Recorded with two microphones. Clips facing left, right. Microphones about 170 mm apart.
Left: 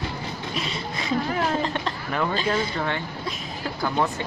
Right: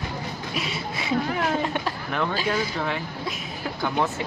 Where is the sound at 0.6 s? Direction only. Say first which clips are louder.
Right 1 dB; 5° right (ahead or behind).